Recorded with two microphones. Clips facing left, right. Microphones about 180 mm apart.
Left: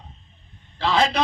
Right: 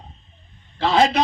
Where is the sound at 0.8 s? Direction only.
45° right (ahead or behind).